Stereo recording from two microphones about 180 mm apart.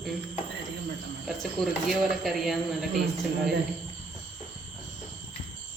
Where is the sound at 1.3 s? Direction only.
Centre (ahead or behind).